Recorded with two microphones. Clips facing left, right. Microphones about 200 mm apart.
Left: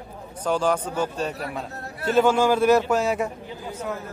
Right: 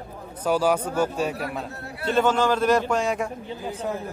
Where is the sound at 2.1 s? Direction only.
10° left (ahead or behind).